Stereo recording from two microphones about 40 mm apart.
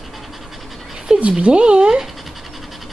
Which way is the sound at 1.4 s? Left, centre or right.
Right.